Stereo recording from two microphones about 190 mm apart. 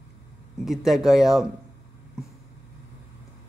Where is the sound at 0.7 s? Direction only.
Centre (ahead or behind).